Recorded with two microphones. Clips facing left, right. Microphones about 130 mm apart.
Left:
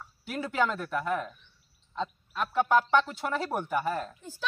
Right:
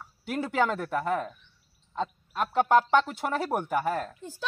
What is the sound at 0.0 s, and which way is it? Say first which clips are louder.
A woman's voice: right 3 dB; 20° right (ahead or behind).